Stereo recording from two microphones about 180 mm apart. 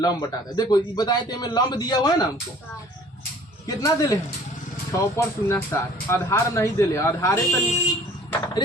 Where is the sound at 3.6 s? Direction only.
20° left (ahead or behind).